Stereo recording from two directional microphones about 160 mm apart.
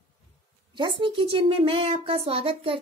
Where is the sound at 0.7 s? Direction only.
30° right (ahead or behind).